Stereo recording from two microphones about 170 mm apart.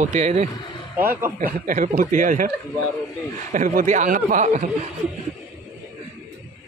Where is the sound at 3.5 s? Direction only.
50° right (ahead or behind).